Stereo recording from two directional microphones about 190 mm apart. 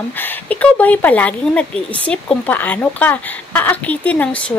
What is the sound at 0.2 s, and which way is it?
Speech, 10° left (ahead or behind).